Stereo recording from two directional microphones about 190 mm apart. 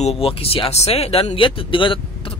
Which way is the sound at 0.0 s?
30° left (ahead or behind).